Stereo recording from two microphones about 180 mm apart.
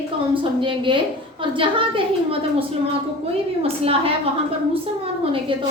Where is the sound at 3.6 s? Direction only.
30° right (ahead or behind).